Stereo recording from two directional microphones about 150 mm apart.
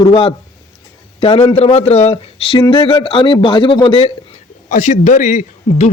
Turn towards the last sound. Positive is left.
turn(degrees=50)  # may be behind; listen again after turning